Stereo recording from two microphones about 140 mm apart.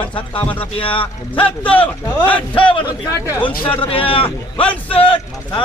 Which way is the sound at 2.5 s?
40° left (ahead or behind).